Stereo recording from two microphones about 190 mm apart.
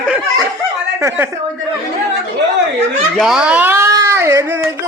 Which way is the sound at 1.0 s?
15° right (ahead or behind).